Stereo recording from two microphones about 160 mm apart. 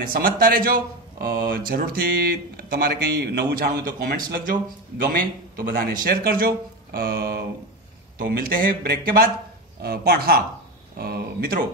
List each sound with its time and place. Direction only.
0.0 s speech: 65° right (ahead or behind)
9.8 s speech: 75° right (ahead or behind)